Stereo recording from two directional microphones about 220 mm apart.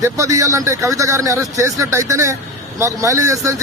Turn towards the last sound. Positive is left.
turn(degrees=-15)  # may be behind; listen again after turning